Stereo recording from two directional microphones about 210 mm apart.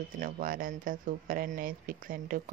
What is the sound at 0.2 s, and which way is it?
Speech, 40° right (ahead or behind).